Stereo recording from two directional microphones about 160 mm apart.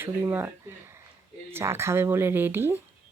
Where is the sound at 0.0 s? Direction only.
15° right (ahead or behind).